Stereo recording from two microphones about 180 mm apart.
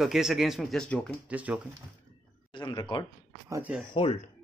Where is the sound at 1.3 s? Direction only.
10° right (ahead or behind).